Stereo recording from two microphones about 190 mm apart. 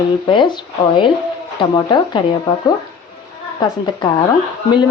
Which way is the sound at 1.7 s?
25° left (ahead or behind).